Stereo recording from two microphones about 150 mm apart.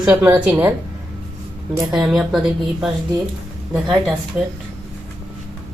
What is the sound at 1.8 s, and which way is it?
Speech, centre (ahead or behind).